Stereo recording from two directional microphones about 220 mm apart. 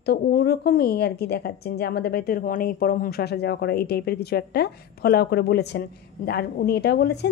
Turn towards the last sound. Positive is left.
turn(degrees=50)  # may be behind; listen again after turning